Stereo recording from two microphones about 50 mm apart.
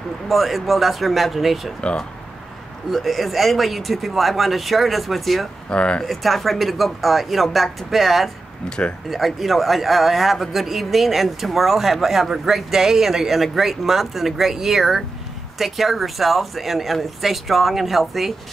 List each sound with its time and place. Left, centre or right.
0.3 s a man's voice: centre
2.9 s a man's voice: centre
5.7 s speech: left
6.0 s a man's voice: centre
8.6 s speech: centre
9.1 s a man's voice: centre